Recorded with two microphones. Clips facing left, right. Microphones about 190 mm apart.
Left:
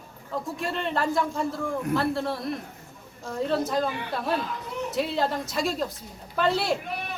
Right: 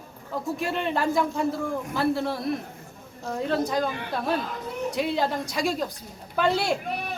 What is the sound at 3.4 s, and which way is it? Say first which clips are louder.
Speech: even; centre (ahead or behind).